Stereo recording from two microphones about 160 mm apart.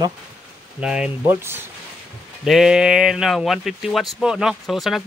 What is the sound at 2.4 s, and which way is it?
Speech, 5° right (ahead or behind).